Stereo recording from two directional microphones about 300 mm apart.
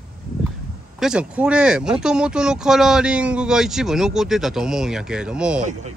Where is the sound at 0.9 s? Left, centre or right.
Centre.